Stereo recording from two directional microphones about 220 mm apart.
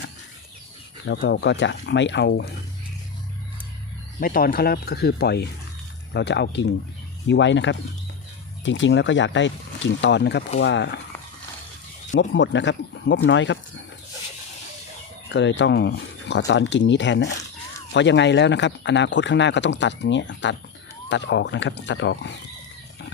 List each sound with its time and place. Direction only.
1.0 s speech: 50° left (ahead or behind)
4.2 s speech: 40° left (ahead or behind)
12.1 s speech: 55° left (ahead or behind)
15.3 s speech: 55° left (ahead or behind)